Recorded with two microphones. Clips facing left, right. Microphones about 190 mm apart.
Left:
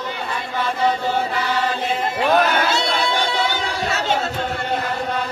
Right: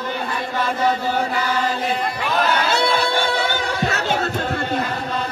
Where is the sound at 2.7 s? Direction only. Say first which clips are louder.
Right 2 dB; 55° right (ahead or behind).